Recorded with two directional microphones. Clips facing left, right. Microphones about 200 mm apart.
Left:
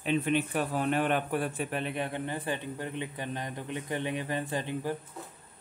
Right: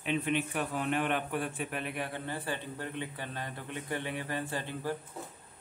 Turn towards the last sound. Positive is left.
turn(degrees=15)  # may be behind; listen again after turning